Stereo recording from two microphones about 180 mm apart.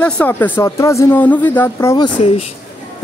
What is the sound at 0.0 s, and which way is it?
Speech, 10° left (ahead or behind).